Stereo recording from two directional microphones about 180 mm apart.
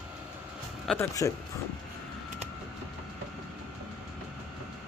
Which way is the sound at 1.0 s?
20° left (ahead or behind).